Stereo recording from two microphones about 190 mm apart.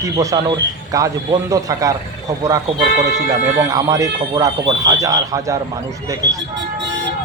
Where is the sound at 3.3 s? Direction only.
20° right (ahead or behind).